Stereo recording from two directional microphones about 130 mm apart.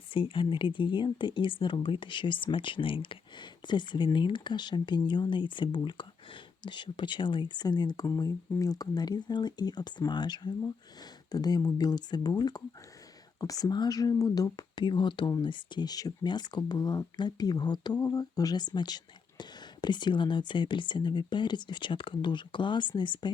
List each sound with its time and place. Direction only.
0.1 s speech: 45° left (ahead or behind)